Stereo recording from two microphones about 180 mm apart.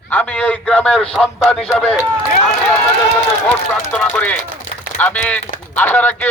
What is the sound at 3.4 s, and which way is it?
A man's voice, 5° left (ahead or behind).